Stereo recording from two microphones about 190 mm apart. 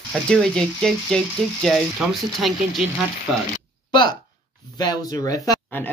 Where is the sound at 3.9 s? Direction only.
25° left (ahead or behind).